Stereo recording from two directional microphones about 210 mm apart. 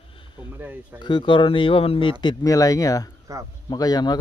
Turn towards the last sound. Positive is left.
turn(degrees=20)  # may be behind; listen again after turning